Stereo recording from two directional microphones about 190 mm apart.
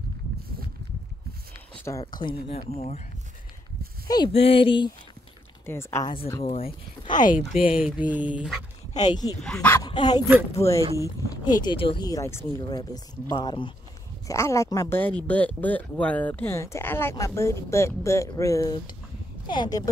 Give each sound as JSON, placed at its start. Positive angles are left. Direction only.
{"t": 1.9, "sound": "speech", "side_deg": 20}
{"t": 4.3, "sound": "speech", "side_deg": 30}
{"t": 5.7, "sound": "speech", "side_deg": 15}
{"t": 6.4, "sound": "speech", "side_deg": 30}
{"t": 7.5, "sound": "speech", "side_deg": 45}
{"t": 7.8, "sound": "speech", "side_deg": -10}
{"t": 9.0, "sound": "speech", "side_deg": 20}
{"t": 9.4, "sound": "speech", "side_deg": 5}
{"t": 9.8, "sound": "speech", "side_deg": 25}